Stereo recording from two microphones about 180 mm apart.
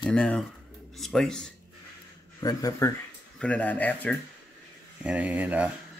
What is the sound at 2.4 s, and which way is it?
Speech, 20° left (ahead or behind).